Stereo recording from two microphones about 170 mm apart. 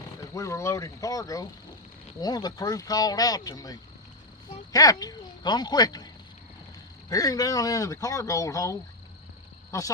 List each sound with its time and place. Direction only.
0.3 s speech: 15° left (ahead or behind)
7.1 s speech: 20° left (ahead or behind)